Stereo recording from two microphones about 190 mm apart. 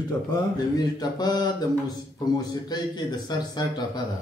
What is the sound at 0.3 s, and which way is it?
Speech, 20° left (ahead or behind).